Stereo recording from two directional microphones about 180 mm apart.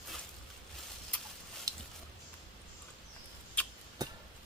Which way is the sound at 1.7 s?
20° right (ahead or behind).